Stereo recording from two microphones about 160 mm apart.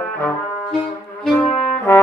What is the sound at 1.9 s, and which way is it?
Brass instrument, 15° left (ahead or behind).